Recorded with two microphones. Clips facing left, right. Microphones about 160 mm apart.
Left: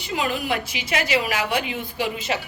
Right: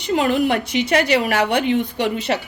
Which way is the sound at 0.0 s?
65° right (ahead or behind).